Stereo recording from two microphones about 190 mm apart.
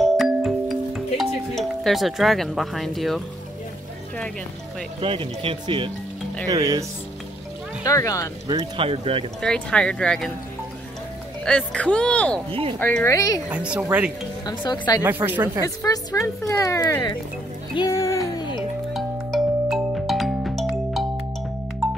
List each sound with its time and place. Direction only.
0.0 s music: centre (ahead or behind)
5.0 s speech: 30° right (ahead or behind)
7.8 s speech: 15° left (ahead or behind)
8.5 s speech: 25° right (ahead or behind)
9.4 s speech: 5° left (ahead or behind)
11.4 s speech: 5° left (ahead or behind)
12.4 s speech: 30° right (ahead or behind)
12.7 s speech: 10° left (ahead or behind)
13.5 s speech: 5° right (ahead or behind)
14.4 s speech: 25° left (ahead or behind)
15.0 s speech: 10° right (ahead or behind)
15.6 s speech: 20° left (ahead or behind)
17.7 s music: 15° left (ahead or behind)
18.9 s music: centre (ahead or behind)